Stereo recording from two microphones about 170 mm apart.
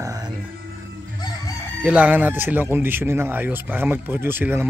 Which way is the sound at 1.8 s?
10° right (ahead or behind).